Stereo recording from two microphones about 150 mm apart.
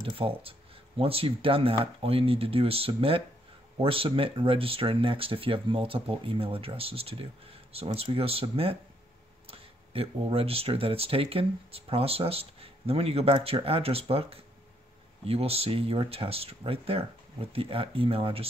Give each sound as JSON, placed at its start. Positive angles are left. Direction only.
{"t": 0.0, "sound": "speech", "side_deg": -40}